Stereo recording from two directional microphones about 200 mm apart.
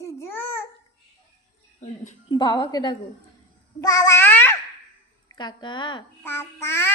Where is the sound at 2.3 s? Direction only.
20° left (ahead or behind).